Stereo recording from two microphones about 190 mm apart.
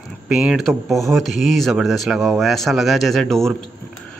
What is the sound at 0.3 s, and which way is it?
Speech, centre (ahead or behind).